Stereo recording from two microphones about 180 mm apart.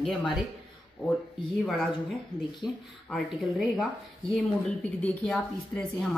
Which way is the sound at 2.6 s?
Centre (ahead or behind).